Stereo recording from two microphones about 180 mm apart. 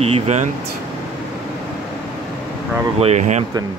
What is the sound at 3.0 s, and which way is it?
Speech, 40° right (ahead or behind).